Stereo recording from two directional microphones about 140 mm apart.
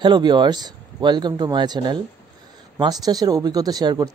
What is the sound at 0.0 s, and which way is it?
Speech, 35° right (ahead or behind).